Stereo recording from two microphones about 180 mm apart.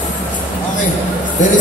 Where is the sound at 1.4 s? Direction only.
45° left (ahead or behind).